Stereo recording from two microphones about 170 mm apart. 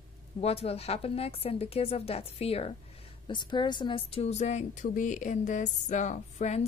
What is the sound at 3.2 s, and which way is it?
A woman's voice, 25° left (ahead or behind).